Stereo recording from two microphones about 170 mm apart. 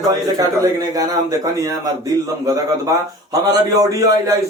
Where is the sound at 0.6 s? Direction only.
20° right (ahead or behind).